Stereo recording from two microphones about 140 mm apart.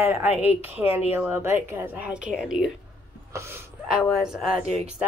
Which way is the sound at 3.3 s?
20° right (ahead or behind).